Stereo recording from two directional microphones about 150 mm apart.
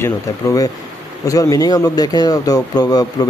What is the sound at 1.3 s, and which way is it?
A man's voice, 25° left (ahead or behind).